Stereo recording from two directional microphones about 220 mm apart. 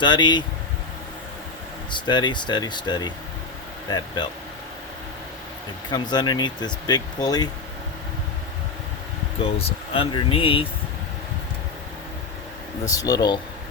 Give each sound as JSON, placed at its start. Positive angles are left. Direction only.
{"t": 0.0, "sound": "speech", "side_deg": 20}
{"t": 1.9, "sound": "speech", "side_deg": 20}
{"t": 5.9, "sound": "speech", "side_deg": 20}
{"t": 9.4, "sound": "speech", "side_deg": 25}
{"t": 12.9, "sound": "speech", "side_deg": 15}